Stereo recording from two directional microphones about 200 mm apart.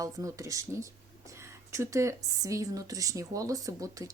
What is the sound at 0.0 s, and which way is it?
Speech, 15° right (ahead or behind).